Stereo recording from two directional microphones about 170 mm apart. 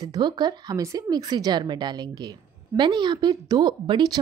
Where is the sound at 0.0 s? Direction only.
25° right (ahead or behind).